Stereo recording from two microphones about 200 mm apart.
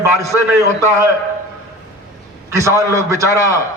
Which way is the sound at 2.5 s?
15° right (ahead or behind).